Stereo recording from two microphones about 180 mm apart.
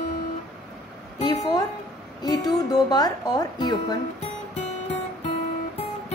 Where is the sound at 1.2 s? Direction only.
20° left (ahead or behind).